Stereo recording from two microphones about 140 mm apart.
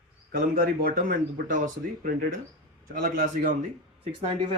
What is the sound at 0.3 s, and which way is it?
Speech, 90° right.